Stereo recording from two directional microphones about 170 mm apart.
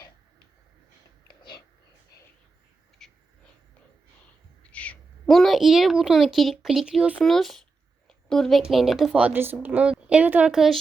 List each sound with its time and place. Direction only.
1.4 s whispering: 25° left (ahead or behind)
3.0 s a sound: 5° left (ahead or behind)
4.6 s speech: 5° left (ahead or behind)